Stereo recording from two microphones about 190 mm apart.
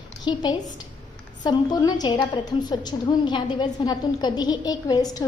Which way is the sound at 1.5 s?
20° left (ahead or behind).